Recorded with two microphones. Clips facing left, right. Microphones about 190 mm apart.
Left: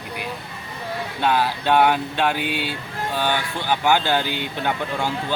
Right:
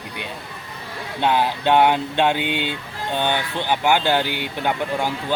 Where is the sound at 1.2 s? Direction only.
20° right (ahead or behind).